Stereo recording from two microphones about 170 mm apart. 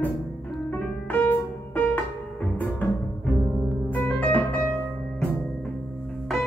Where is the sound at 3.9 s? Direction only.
10° left (ahead or behind).